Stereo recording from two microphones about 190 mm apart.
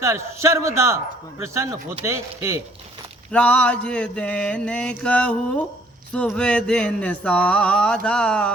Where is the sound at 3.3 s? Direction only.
5° left (ahead or behind).